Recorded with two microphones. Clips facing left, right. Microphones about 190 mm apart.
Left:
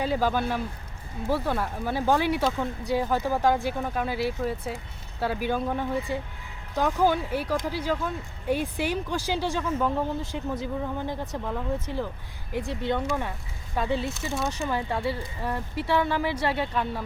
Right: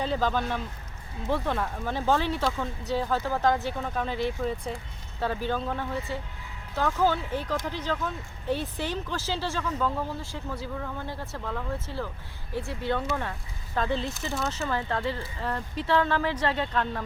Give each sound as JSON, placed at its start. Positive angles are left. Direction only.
{"t": 0.0, "sound": "speech", "side_deg": 10}